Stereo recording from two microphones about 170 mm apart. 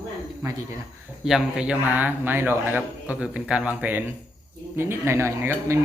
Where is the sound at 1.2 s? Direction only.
5° right (ahead or behind).